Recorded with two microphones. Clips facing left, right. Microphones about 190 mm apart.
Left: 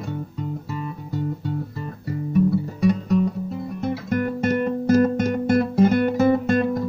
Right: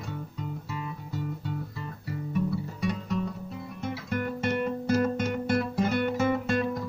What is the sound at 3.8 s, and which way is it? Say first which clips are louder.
Guitar: left 7 dB; 45° left (ahead or behind).